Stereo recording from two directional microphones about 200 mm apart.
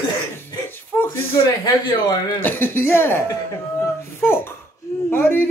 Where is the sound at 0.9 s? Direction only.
10° left (ahead or behind).